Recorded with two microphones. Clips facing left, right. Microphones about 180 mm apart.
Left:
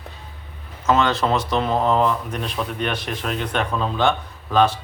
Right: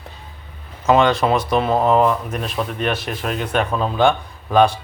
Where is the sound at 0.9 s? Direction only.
15° right (ahead or behind).